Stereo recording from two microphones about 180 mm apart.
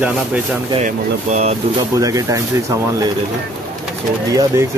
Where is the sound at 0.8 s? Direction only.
40° right (ahead or behind).